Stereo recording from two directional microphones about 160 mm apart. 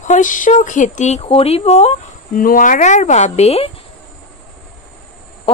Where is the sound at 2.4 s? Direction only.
60° left (ahead or behind); by 3.7 s 40° left (ahead or behind).